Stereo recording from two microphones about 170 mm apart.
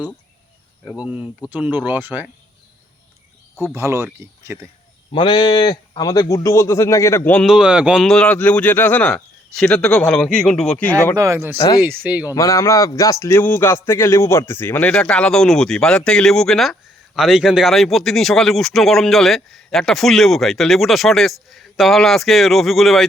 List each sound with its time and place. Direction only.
0.9 s speech: 5° right (ahead or behind)
3.8 s speech: 15° right (ahead or behind)
5.1 s speech: 30° left (ahead or behind); by 7.4 s 10° left (ahead or behind)
7.4 s speech: 5° right (ahead or behind)
11.2 s speech: 15° right (ahead or behind)
11.5 s speech: 20° left (ahead or behind)
11.8 s speech: 10° right (ahead or behind)
12.3 s a man's voice: 20° left (ahead or behind); by 23.0 s centre (ahead or behind)